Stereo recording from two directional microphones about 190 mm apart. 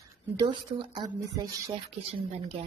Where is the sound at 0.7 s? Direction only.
35° right (ahead or behind).